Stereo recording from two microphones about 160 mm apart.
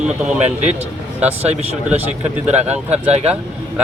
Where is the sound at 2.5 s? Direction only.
45° right (ahead or behind).